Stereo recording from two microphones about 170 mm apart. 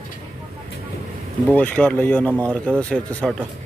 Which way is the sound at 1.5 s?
10° left (ahead or behind).